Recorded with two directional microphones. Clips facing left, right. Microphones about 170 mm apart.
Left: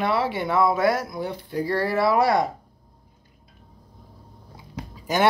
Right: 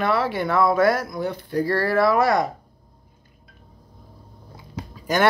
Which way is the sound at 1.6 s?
20° left (ahead or behind).